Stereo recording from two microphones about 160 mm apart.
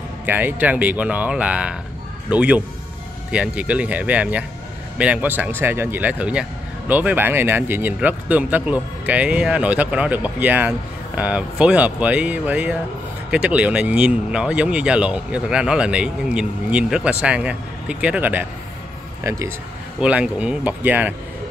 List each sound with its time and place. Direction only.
0.3 s speech: 10° right (ahead or behind)
20.0 s speech: 10° right (ahead or behind)